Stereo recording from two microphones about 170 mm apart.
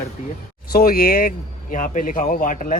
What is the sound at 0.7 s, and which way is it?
Speech, 60° left (ahead or behind).